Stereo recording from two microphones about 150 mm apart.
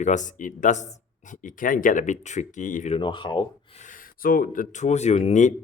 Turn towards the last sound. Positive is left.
turn(degrees=50)  # may be behind; listen again after turning